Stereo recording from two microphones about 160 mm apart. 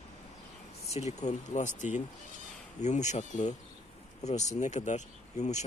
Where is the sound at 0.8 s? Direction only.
45° left (ahead or behind).